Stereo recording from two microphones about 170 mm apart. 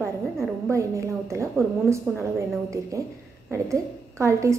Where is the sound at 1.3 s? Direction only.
15° right (ahead or behind).